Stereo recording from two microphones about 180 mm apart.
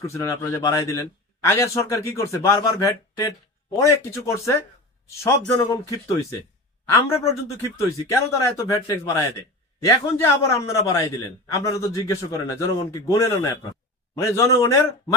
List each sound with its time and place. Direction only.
0.0 s a man's voice: 15° left (ahead or behind)